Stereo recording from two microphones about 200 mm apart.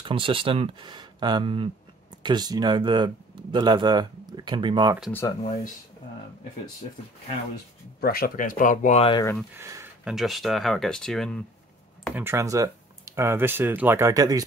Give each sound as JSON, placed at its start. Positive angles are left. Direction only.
{"t": 0.0, "sound": "speech", "side_deg": -25}
{"t": 5.1, "sound": "speech", "side_deg": 15}
{"t": 8.0, "sound": "speech", "side_deg": 50}
{"t": 9.6, "sound": "speech", "side_deg": -15}
{"t": 10.0, "sound": "speech", "side_deg": 0}
{"t": 12.2, "sound": "speech", "side_deg": -15}